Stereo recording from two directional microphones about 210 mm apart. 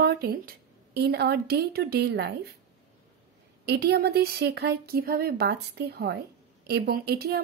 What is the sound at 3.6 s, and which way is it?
A woman's voice, 55° right (ahead or behind).